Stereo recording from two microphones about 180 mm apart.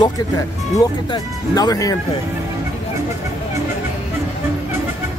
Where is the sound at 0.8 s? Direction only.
20° left (ahead or behind).